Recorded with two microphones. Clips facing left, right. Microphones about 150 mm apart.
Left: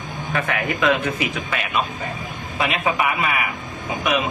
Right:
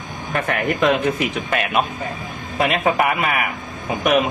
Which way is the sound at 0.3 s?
40° right (ahead or behind).